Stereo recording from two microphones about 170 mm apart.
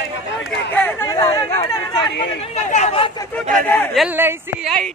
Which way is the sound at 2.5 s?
40° left (ahead or behind).